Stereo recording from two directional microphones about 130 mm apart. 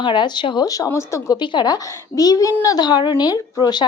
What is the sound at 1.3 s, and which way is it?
Speech, 35° left (ahead or behind).